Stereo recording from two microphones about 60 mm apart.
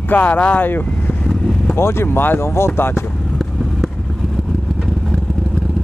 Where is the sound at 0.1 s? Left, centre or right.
Left.